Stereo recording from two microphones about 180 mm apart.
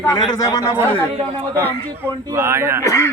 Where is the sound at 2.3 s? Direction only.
15° right (ahead or behind).